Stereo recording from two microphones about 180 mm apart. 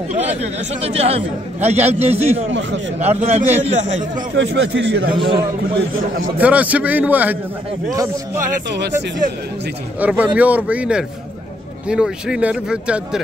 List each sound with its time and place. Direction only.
0.1 s speech: 35° right (ahead or behind)
4.4 s speech: 85° right
5.1 s a man's voice: 30° right (ahead or behind)
6.3 s speech: 10° right (ahead or behind)
8.6 s speech: 75° right (ahead or behind)
9.9 s speech: 10° right (ahead or behind)